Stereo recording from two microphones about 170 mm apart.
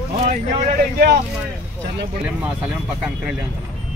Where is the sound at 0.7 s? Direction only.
65° right (ahead or behind).